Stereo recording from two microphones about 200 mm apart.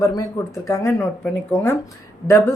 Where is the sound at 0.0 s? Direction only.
15° left (ahead or behind).